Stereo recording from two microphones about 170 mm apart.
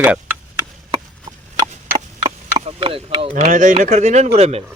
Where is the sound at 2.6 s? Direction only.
35° right (ahead or behind).